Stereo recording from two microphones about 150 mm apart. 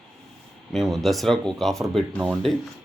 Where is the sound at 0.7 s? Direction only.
Centre (ahead or behind).